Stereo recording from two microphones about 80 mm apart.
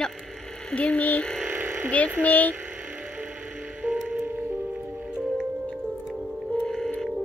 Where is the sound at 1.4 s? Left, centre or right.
Right.